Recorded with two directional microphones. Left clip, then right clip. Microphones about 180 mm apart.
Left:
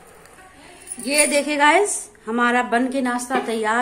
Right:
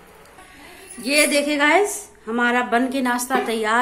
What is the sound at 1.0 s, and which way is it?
A woman's voice, 10° right (ahead or behind).